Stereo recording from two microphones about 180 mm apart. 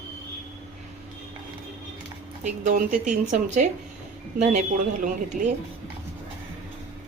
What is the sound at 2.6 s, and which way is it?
Speech, 45° right (ahead or behind).